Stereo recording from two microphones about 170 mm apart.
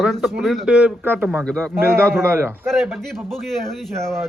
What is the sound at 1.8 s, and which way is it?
Speech, 15° right (ahead or behind).